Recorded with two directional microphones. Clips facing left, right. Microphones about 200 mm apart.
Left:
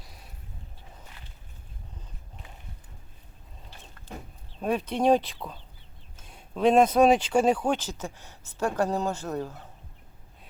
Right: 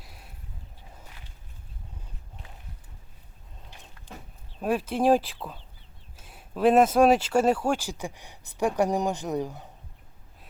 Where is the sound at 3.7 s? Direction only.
15° right (ahead or behind).